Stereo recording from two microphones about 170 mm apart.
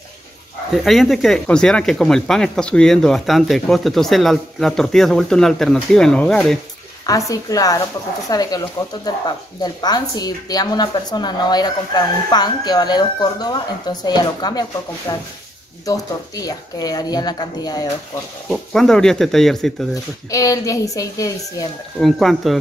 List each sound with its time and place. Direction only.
0.8 s speech: centre (ahead or behind)
7.1 s a woman's voice: 20° left (ahead or behind)
18.5 s speech: centre (ahead or behind)
19.9 s a woman's voice: 20° left (ahead or behind)
22.0 s speech: centre (ahead or behind)